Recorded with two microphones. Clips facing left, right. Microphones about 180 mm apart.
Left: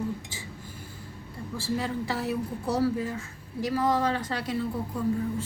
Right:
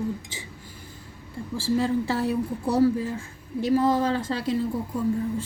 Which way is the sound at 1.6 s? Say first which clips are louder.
Right 7 dB; 30° right (ahead or behind).